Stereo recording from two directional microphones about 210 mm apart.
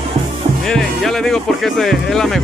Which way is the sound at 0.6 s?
Centre (ahead or behind).